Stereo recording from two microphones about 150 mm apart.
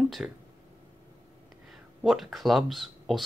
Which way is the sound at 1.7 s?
Centre (ahead or behind).